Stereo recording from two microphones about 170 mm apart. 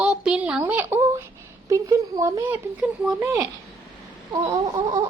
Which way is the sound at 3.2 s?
20° right (ahead or behind).